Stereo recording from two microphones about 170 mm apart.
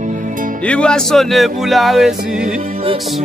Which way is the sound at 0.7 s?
5° left (ahead or behind).